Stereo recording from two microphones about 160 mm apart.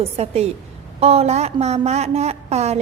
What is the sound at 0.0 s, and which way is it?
A woman's voice, 40° right (ahead or behind).